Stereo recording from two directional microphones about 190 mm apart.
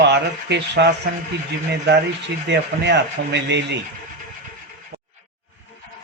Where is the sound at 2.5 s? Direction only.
65° right (ahead or behind).